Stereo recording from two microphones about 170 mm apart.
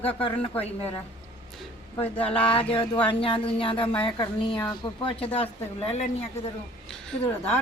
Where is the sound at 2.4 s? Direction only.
35° left (ahead or behind).